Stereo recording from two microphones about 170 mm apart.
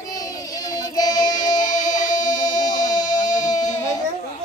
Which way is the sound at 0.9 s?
25° left (ahead or behind).